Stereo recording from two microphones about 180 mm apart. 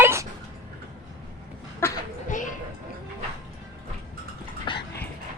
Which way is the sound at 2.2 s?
45° left (ahead or behind).